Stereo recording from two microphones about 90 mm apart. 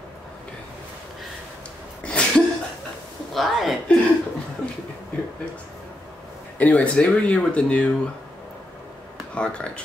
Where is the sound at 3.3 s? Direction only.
Centre (ahead or behind).